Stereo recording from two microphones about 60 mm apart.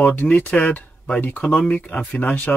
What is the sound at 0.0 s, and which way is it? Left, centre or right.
Speech, left.